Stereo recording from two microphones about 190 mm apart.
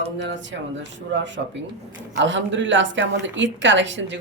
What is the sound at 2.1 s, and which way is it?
Speech, 75° right (ahead or behind).